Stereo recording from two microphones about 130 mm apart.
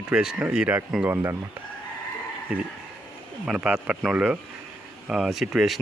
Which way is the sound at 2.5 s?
10° right (ahead or behind).